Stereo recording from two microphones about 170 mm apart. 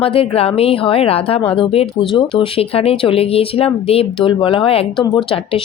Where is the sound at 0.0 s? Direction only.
35° left (ahead or behind).